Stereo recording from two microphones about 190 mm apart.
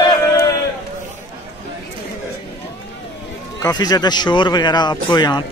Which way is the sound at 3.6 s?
20° left (ahead or behind).